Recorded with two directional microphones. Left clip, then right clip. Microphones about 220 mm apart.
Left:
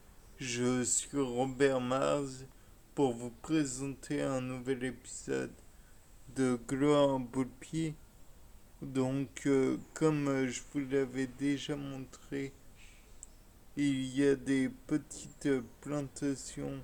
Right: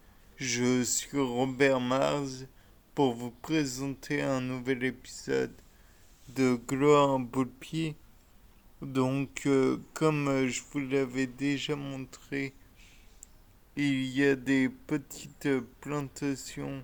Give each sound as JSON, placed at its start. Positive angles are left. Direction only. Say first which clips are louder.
{"t": 0.3, "sound": "speech", "louder": "right 5 dB", "side_deg": -30}
{"t": 13.7, "sound": "speech", "louder": "right 4 dB", "side_deg": -35}